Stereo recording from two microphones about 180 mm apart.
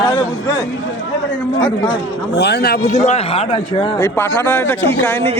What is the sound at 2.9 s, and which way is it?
Speech, 40° left (ahead or behind).